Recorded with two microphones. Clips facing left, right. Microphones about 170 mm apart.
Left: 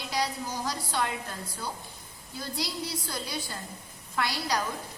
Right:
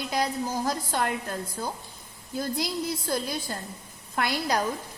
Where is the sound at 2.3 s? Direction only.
50° right (ahead or behind).